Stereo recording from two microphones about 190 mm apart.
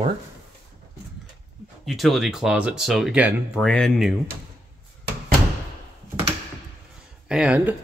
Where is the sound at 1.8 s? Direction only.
Centre (ahead or behind).